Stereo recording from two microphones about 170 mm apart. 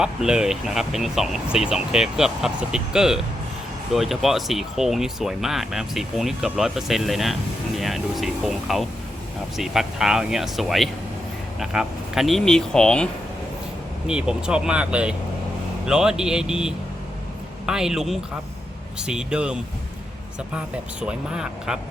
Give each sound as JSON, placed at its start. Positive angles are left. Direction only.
{"t": 0.0, "sound": "speech", "side_deg": -5}
{"t": 14.1, "sound": "speech", "side_deg": -5}